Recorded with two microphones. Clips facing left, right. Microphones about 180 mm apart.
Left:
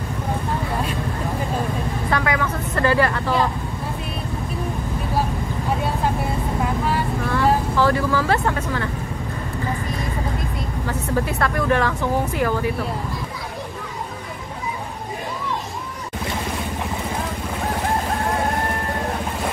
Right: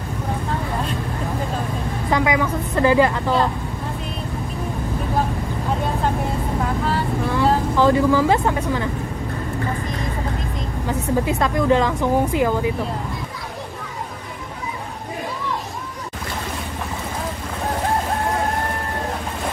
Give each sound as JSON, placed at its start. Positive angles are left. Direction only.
{"t": 2.0, "sound": "speech", "side_deg": -15}
{"t": 7.7, "sound": "speech", "side_deg": -15}
{"t": 10.9, "sound": "speech", "side_deg": -15}